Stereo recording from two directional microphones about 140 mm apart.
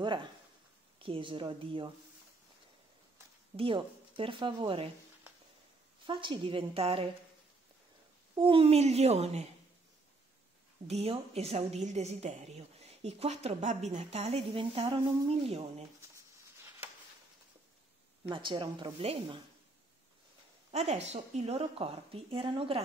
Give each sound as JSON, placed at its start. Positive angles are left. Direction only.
{"t": 0.0, "sound": "a woman's voice", "side_deg": -35}
{"t": 3.5, "sound": "a woman's voice", "side_deg": -40}
{"t": 6.0, "sound": "a woman's voice", "side_deg": -35}
{"t": 8.4, "sound": "a woman's voice", "side_deg": -40}
{"t": 10.9, "sound": "a woman's voice", "side_deg": -50}
{"t": 18.2, "sound": "a woman's voice", "side_deg": -35}
{"t": 20.7, "sound": "a woman's voice", "side_deg": -50}